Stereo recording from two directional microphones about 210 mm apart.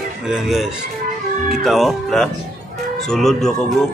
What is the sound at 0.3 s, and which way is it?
Speech, centre (ahead or behind).